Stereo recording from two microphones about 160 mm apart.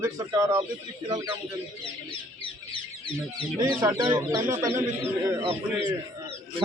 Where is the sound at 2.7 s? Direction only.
30° left (ahead or behind).